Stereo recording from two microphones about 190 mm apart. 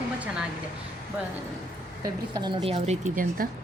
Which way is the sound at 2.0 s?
20° right (ahead or behind).